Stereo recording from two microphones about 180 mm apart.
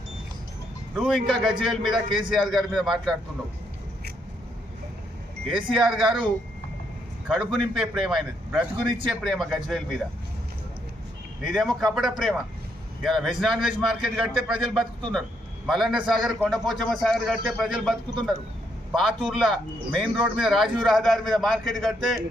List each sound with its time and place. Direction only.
0.9 s a man's voice: centre (ahead or behind)
5.5 s a man's voice: 5° right (ahead or behind)
7.3 s a man's voice: centre (ahead or behind)
11.4 s a man's voice: centre (ahead or behind)